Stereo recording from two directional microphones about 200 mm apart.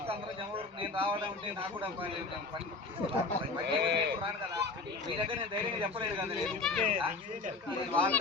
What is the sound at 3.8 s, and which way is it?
Speech, 55° right (ahead or behind).